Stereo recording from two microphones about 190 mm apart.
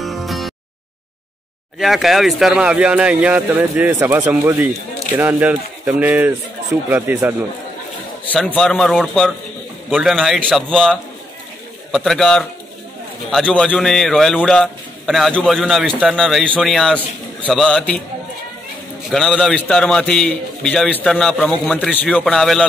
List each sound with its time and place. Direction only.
0.0 s a sound: centre (ahead or behind)
1.8 s a man's voice: centre (ahead or behind)
8.3 s a man's voice: 5° left (ahead or behind)
19.0 s a man's voice: centre (ahead or behind)